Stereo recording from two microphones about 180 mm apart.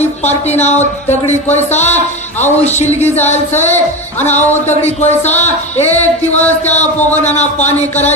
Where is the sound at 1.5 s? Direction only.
40° left (ahead or behind).